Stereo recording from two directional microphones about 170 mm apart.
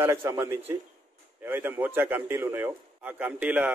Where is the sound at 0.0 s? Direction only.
15° right (ahead or behind).